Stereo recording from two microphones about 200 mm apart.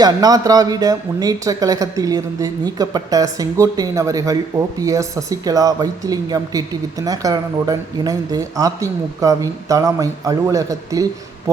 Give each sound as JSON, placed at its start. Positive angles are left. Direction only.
{"t": 0.0, "sound": "speech", "side_deg": -20}